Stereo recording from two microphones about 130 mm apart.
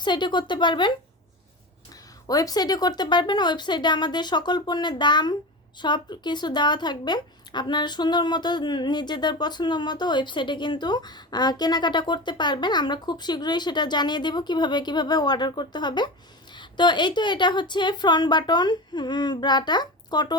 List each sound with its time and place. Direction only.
0.0 s a woman's voice: 35° left (ahead or behind)
2.2 s a woman's voice: 30° left (ahead or behind)